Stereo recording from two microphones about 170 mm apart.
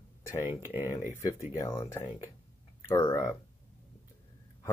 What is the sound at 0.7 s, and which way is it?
Speech, 20° left (ahead or behind).